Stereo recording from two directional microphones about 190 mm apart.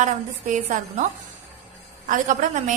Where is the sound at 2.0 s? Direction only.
40° right (ahead or behind).